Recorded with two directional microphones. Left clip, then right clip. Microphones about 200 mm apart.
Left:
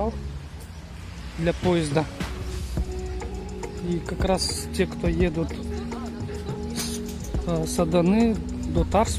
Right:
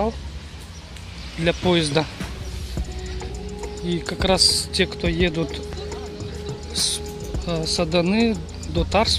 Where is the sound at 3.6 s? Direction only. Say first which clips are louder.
Right 4 dB; 5° left (ahead or behind).